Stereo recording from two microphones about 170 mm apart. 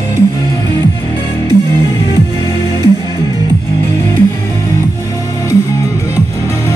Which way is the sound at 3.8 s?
15° left (ahead or behind).